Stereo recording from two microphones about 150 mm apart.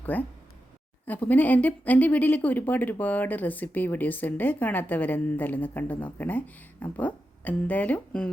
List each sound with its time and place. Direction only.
0.0 s a woman's voice: 10° left (ahead or behind)